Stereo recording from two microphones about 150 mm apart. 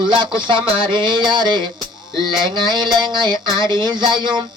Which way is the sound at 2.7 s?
30° right (ahead or behind).